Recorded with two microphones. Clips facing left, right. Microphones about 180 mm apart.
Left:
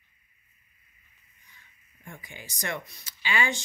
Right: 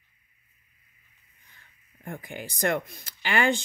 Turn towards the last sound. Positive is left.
turn(degrees=-60)  # may be behind; listen again after turning